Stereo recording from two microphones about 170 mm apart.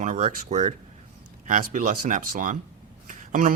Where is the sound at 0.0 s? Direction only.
45° right (ahead or behind).